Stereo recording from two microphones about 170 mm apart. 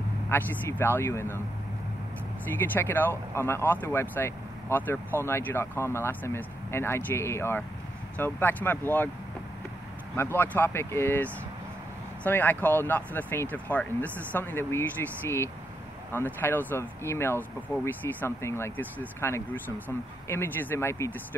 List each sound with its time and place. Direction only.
0.3 s speech: 10° left (ahead or behind)
2.5 s speech: 10° left (ahead or behind)
10.1 s speech: 15° left (ahead or behind)